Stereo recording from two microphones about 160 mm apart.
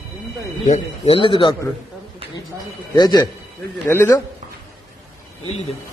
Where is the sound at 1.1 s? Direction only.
30° left (ahead or behind).